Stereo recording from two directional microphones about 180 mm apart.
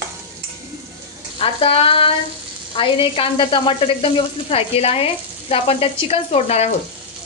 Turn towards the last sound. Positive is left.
turn(degrees=35)  # may be behind; listen again after turning